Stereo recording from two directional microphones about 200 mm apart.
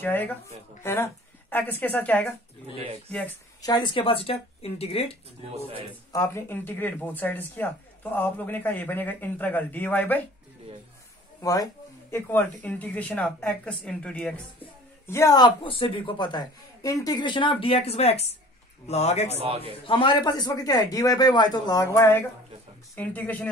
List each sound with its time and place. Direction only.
0.0 s a woman's voice: 10° left (ahead or behind)
3.6 s speech: 20° left (ahead or behind)
6.1 s speech: 15° left (ahead or behind)
11.4 s speech: 15° left (ahead or behind)
15.0 s speech: 15° left (ahead or behind); by 19.3 s 35° left (ahead or behind)
19.3 s a man's voice: 30° right (ahead or behind)
19.9 s speech: 25° left (ahead or behind); by 23.5 s 10° left (ahead or behind)